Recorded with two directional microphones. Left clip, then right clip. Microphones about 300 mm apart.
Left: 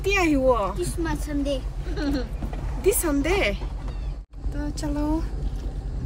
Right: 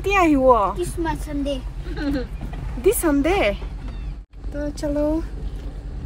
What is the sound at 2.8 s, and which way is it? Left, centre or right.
Speech, centre.